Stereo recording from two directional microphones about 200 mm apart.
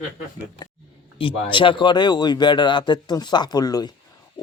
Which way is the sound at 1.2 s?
25° left (ahead or behind).